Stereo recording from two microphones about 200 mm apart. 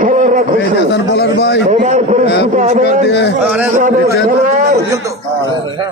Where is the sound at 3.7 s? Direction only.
40° right (ahead or behind).